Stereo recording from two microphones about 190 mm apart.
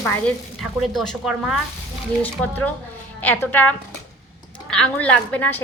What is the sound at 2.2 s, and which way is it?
A woman's voice, 10° left (ahead or behind).